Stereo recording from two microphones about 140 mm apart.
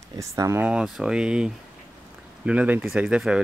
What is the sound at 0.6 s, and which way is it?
Speech, 5° right (ahead or behind).